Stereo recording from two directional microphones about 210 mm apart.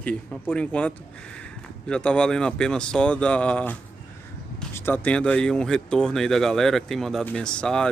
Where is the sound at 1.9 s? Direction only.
5° left (ahead or behind).